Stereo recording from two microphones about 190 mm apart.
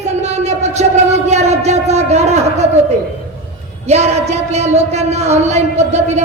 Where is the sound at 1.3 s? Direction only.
35° right (ahead or behind).